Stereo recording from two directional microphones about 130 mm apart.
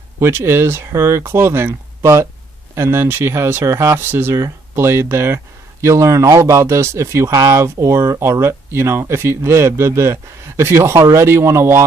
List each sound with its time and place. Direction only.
0.2 s speech: 20° right (ahead or behind)